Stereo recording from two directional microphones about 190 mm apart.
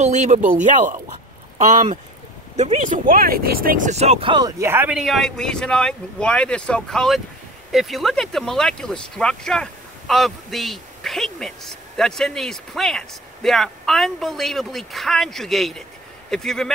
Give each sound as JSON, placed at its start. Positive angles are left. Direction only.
{"t": 0.0, "sound": "speech", "side_deg": -40}
{"t": 1.6, "sound": "speech", "side_deg": -40}